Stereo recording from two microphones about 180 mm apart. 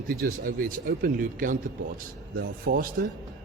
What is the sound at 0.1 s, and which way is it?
Speech, 55° right (ahead or behind).